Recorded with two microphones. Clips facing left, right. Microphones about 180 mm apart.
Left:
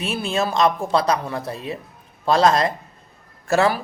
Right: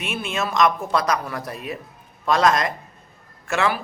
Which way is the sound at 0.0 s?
35° left (ahead or behind).